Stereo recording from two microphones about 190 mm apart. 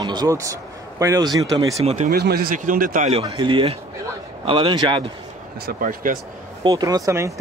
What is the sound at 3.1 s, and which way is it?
Speech, 30° right (ahead or behind).